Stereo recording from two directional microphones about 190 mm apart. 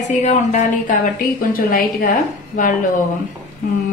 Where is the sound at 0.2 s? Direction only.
40° left (ahead or behind).